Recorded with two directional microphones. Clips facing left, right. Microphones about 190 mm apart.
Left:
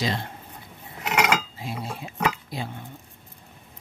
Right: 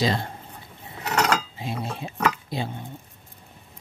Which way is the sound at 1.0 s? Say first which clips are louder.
Even; 10° left (ahead or behind).